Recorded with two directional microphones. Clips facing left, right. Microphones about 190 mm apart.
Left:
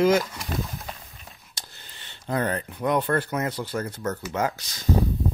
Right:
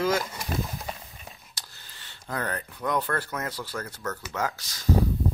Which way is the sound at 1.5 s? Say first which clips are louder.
Left 3 dB; 20° left (ahead or behind).